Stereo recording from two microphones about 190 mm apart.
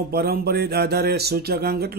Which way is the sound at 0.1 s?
55° right (ahead or behind).